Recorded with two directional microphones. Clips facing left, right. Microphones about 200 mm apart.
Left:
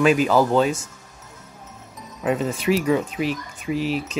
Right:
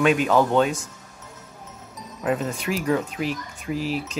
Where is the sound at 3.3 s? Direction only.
40° right (ahead or behind).